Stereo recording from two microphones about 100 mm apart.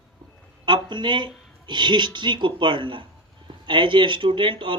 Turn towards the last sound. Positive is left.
turn(degrees=-60)  # may be behind; listen again after turning